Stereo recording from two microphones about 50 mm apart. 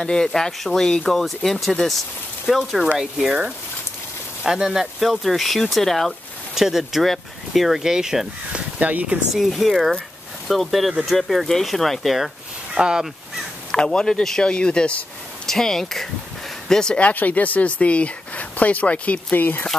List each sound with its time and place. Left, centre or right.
0.0 s speech: centre
4.5 s speech: centre
6.5 s speech: centre
8.5 s speech: right
9.3 s speech: centre
12.7 s speech: centre
13.7 s speech: centre
15.4 s speech: centre
16.9 s speech: left